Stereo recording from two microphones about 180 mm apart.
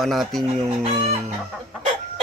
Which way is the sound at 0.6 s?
35° right (ahead or behind).